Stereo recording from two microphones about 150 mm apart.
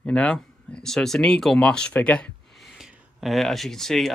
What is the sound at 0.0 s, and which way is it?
Speech, 5° left (ahead or behind).